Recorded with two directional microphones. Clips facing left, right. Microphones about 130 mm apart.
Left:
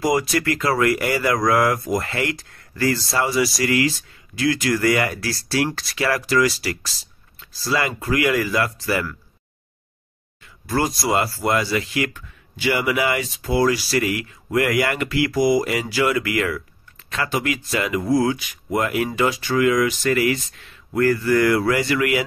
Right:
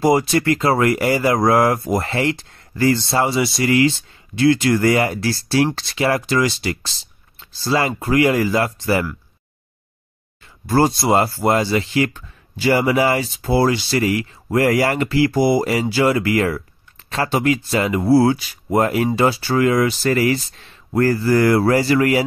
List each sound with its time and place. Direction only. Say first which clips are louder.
0.0 s speech: right 4 dB; 30° right (ahead or behind)
10.4 s speech: right 6 dB; 35° right (ahead or behind)